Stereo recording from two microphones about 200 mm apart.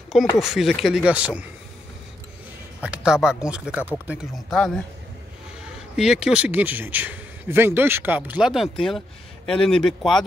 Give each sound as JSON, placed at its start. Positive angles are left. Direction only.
{"t": 0.4, "sound": "speech", "side_deg": 0}
{"t": 2.8, "sound": "speech", "side_deg": -5}
{"t": 5.9, "sound": "speech", "side_deg": -5}